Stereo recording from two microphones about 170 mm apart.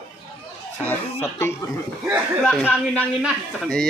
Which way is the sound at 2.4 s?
Centre (ahead or behind).